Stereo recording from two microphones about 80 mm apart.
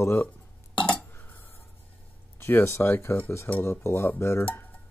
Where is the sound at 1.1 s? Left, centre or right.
Left.